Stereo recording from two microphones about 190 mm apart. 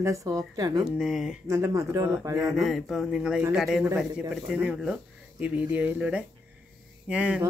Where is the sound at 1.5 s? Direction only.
15° right (ahead or behind).